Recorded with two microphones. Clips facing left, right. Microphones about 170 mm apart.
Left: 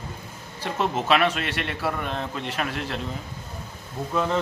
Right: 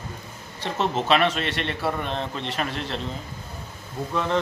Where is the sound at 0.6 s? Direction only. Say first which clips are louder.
Right 1 dB; 5° left (ahead or behind).